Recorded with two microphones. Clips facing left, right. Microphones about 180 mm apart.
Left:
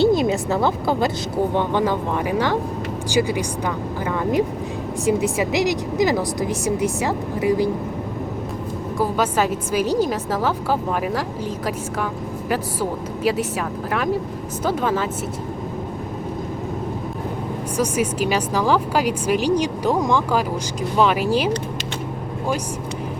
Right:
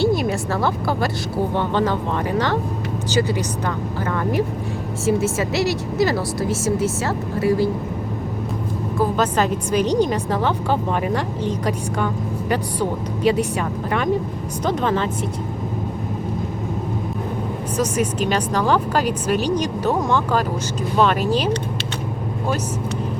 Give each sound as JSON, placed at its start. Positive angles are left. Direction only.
{"t": 0.0, "sound": "a woman's voice", "side_deg": 20}
{"t": 9.0, "sound": "a woman's voice", "side_deg": 10}
{"t": 17.7, "sound": "a woman's voice", "side_deg": 10}